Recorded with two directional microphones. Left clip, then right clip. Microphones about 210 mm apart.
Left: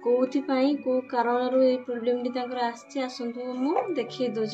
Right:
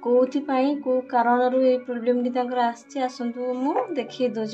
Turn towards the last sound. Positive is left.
turn(degrees=-25)  # may be behind; listen again after turning